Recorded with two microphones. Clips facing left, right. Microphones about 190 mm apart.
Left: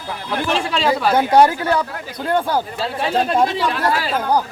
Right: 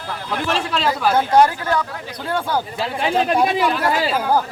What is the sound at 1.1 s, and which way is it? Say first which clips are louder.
Speech: left 1 dB; 15° left (ahead or behind).